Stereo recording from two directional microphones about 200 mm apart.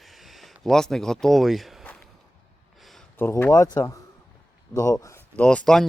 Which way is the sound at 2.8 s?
Centre (ahead or behind).